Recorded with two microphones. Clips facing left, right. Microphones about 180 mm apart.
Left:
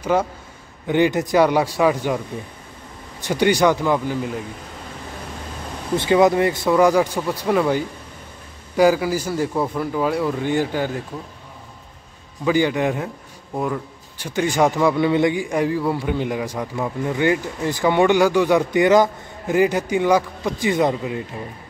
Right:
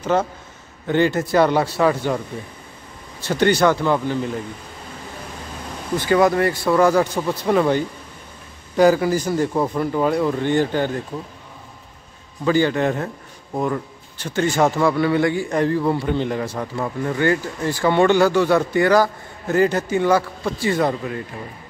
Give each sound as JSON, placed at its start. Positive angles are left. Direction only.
{"t": 0.0, "sound": "a man's voice", "side_deg": 10}
{"t": 5.9, "sound": "a man's voice", "side_deg": 20}
{"t": 12.4, "sound": "a man's voice", "side_deg": 10}